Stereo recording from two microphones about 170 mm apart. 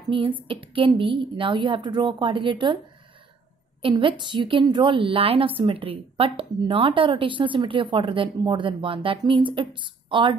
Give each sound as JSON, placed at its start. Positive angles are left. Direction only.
{"t": 0.4, "sound": "a woman's voice", "side_deg": -30}
{"t": 3.8, "sound": "a woman's voice", "side_deg": -30}